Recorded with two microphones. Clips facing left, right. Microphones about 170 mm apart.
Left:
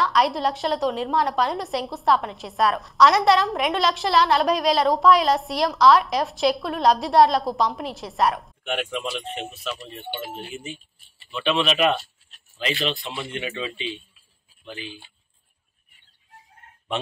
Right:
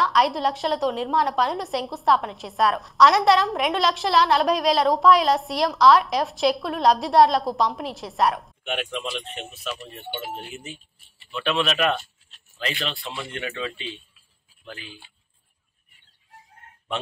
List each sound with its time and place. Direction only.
0.0 s a woman's voice: centre (ahead or behind)
11.3 s a woman's voice: centre (ahead or behind)
12.8 s speech: 25° left (ahead or behind)